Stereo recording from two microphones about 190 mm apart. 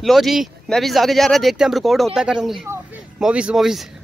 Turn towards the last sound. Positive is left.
turn(degrees=0)  # may be behind; listen again after turning